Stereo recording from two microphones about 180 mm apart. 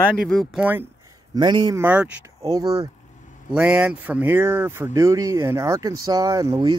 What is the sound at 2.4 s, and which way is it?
Speech, 20° right (ahead or behind).